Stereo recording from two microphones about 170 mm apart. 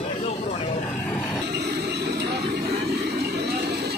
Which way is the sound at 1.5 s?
70° right (ahead or behind).